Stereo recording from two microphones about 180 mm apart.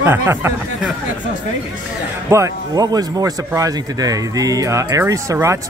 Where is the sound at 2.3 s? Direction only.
20° right (ahead or behind).